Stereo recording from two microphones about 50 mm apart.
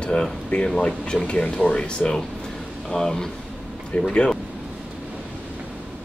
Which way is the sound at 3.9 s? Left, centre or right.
Left.